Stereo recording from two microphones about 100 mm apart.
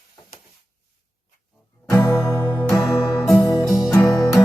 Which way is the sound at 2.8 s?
Centre (ahead or behind).